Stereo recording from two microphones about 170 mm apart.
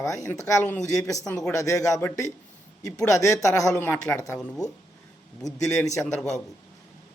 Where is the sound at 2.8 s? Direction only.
5° left (ahead or behind).